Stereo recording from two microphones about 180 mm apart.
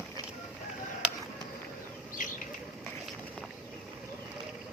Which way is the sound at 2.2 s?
45° left (ahead or behind).